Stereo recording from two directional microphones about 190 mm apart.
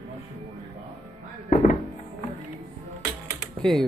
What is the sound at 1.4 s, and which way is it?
Music, 45° left (ahead or behind).